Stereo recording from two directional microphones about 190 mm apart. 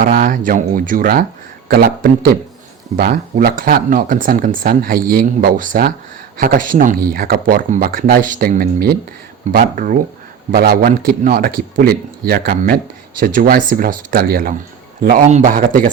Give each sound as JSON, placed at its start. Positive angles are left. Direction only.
{"t": 0.0, "sound": "a man's voice", "side_deg": -50}